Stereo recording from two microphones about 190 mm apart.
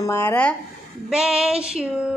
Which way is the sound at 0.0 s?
15° left (ahead or behind).